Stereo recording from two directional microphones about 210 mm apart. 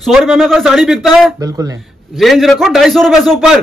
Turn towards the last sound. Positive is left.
turn(degrees=0)  # may be behind; listen again after turning